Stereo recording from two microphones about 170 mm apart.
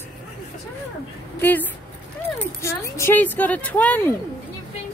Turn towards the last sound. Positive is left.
turn(degrees=10)  # may be behind; listen again after turning